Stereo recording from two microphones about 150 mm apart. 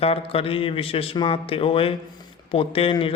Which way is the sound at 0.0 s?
40° left (ahead or behind).